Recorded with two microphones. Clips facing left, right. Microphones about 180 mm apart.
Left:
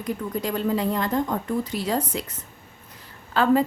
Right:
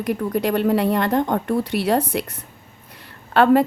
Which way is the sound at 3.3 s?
65° right (ahead or behind).